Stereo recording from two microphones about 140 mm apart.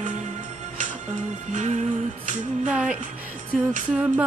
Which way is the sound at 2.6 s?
10° right (ahead or behind).